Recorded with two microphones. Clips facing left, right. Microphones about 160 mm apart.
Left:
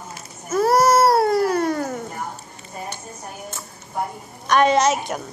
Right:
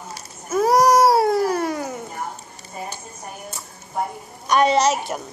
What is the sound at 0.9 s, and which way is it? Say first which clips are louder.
Cat: right 1 dB; 10° right (ahead or behind).